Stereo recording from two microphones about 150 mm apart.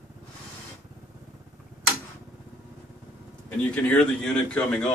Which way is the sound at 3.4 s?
10° left (ahead or behind).